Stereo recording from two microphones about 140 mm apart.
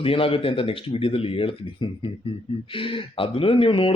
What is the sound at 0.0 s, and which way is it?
Speech, 40° left (ahead or behind).